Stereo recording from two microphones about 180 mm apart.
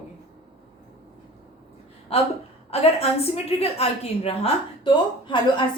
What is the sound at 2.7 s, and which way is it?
A woman's voice, 35° left (ahead or behind).